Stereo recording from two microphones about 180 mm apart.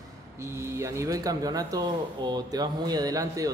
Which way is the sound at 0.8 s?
20° right (ahead or behind).